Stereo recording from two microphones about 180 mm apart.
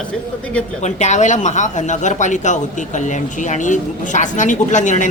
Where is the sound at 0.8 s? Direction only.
40° left (ahead or behind).